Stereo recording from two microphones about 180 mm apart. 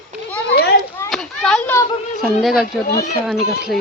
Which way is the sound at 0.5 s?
65° left (ahead or behind).